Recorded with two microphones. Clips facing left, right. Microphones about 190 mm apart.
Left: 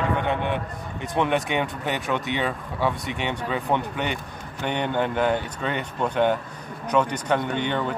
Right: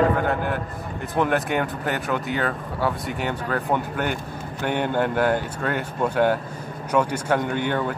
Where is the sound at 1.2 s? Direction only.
Centre (ahead or behind).